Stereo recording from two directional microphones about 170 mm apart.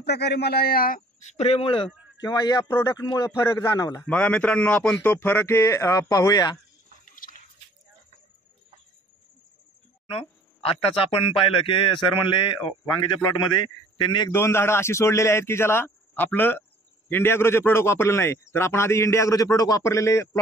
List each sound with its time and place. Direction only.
0.0 s a man's voice: 75° left (ahead or behind); by 4.0 s 20° left (ahead or behind)
4.0 s a man's voice: 10° left (ahead or behind); by 6.6 s 25° left (ahead or behind)
7.1 s a sound: 55° left (ahead or behind)
10.0 s speech: 35° left (ahead or behind)
13.9 s a man's voice: 25° left (ahead or behind)
14.3 s a man's voice: 15° left (ahead or behind)